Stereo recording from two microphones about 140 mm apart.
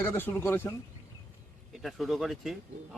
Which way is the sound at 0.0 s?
15° left (ahead or behind).